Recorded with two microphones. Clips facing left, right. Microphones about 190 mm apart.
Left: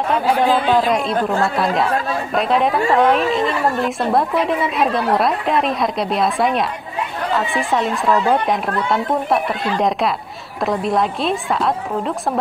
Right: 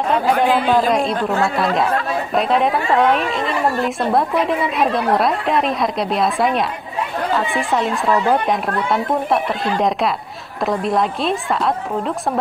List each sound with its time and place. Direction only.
0.1 s a woman's voice: centre (ahead or behind)